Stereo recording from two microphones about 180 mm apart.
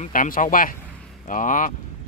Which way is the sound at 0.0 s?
50° left (ahead or behind).